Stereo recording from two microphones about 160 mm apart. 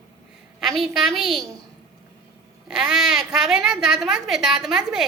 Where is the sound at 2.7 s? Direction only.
5° right (ahead or behind).